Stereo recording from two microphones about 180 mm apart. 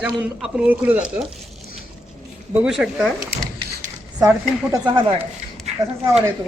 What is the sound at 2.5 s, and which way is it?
Speech, 5° right (ahead or behind).